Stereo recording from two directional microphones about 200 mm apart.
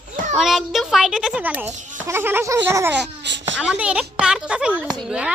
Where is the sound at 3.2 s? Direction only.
60° right (ahead or behind).